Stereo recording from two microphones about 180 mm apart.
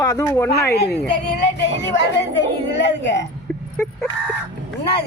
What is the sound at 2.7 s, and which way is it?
Speech, 80° left.